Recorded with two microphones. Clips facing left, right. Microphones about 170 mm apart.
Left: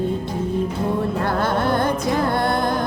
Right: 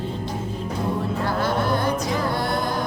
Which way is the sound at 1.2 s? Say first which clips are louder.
Left 1 dB; 55° left (ahead or behind).